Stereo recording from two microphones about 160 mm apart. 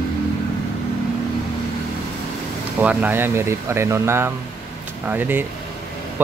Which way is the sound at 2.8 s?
10° right (ahead or behind).